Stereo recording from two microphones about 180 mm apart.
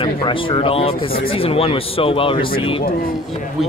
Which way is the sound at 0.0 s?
30° left (ahead or behind).